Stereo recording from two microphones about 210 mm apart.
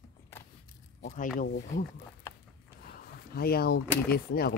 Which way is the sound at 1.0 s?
40° left (ahead or behind).